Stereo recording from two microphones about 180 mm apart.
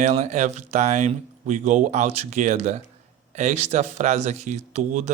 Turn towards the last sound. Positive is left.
turn(degrees=-40)  # may be behind; listen again after turning